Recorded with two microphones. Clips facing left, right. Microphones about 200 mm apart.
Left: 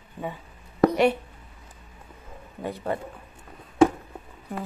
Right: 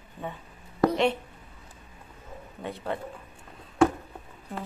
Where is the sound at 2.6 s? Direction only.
5° left (ahead or behind).